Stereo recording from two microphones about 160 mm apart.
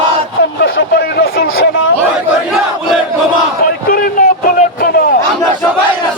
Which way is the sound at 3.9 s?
60° left (ahead or behind).